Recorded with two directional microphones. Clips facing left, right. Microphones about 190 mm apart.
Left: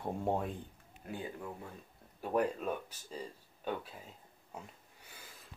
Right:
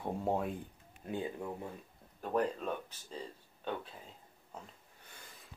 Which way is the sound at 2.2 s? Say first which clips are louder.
Left 1 dB; 10° left (ahead or behind).